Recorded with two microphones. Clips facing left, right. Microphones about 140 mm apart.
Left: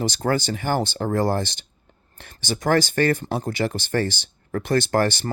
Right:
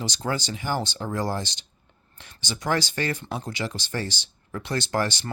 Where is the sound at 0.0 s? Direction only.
50° left (ahead or behind).